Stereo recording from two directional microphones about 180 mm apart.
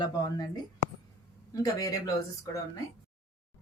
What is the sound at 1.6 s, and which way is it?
Speech, 20° left (ahead or behind).